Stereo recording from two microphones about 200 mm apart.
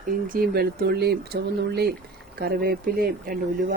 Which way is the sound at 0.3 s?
50° right (ahead or behind).